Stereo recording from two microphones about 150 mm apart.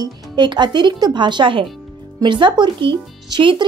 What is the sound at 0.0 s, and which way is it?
Speech, 30° right (ahead or behind).